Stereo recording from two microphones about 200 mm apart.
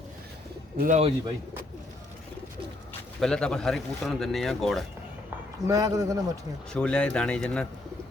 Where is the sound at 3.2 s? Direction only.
5° left (ahead or behind).